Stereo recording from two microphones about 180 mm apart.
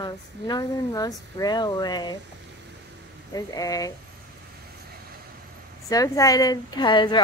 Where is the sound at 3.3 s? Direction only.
20° left (ahead or behind).